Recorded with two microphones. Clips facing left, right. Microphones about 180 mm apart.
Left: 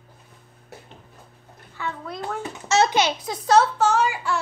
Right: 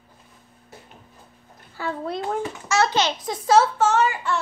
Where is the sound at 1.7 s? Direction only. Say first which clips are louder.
Right 4 dB; 30° right (ahead or behind).